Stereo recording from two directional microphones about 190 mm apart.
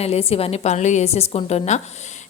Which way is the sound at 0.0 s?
30° left (ahead or behind).